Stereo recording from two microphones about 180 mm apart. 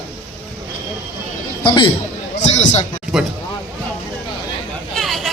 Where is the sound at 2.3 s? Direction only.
40° left (ahead or behind).